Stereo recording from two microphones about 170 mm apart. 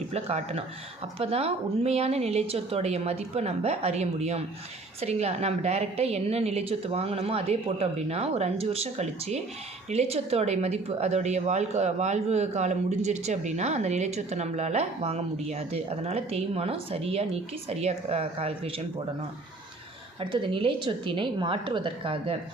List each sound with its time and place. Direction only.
0.1 s speech: 40° right (ahead or behind)
20.1 s speech: 30° right (ahead or behind)